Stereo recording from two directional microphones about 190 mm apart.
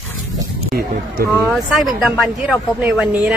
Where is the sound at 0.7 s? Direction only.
50° right (ahead or behind).